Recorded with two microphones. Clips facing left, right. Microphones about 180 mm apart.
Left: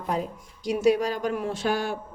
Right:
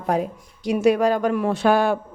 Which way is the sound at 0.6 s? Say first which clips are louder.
Right 4 dB; 60° right (ahead or behind).